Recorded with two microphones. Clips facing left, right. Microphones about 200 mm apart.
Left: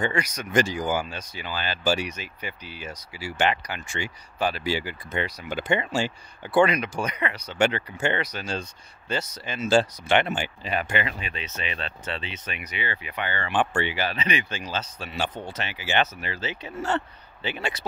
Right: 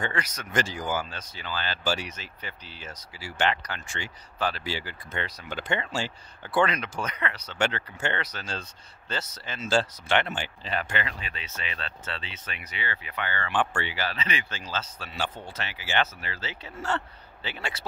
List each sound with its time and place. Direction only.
0.0 s speech: 15° left (ahead or behind)